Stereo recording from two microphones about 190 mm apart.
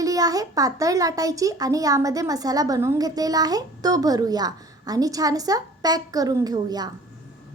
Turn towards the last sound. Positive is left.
turn(degrees=-20)  # may be behind; listen again after turning